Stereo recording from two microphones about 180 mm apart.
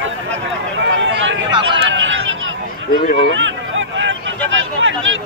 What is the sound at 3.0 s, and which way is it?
Speech, 45° left (ahead or behind).